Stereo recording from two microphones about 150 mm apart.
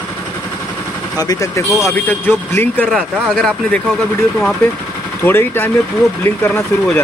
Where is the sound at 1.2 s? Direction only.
25° left (ahead or behind).